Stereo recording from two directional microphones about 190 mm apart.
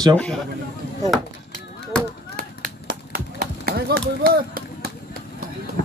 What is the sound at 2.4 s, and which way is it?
Run, 50° right (ahead or behind).